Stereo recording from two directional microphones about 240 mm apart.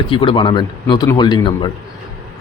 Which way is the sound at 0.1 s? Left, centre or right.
Left.